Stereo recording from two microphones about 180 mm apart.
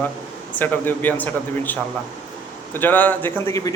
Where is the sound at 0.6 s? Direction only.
10° left (ahead or behind).